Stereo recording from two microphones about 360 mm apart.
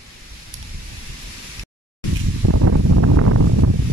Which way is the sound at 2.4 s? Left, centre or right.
Right.